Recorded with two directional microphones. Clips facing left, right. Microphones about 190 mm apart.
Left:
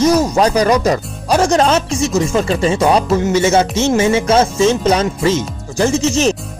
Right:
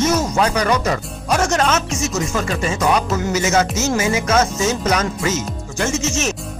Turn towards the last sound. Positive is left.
turn(degrees=35)  # may be behind; listen again after turning